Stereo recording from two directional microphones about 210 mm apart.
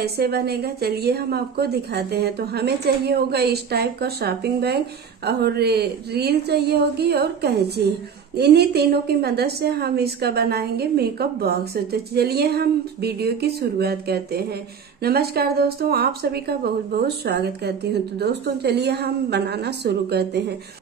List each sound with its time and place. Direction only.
0.0 s a woman's voice: 50° right (ahead or behind)